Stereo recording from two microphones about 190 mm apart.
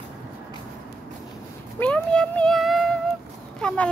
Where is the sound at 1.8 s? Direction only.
5° left (ahead or behind).